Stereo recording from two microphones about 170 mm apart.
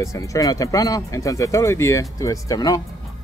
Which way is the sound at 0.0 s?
20° left (ahead or behind).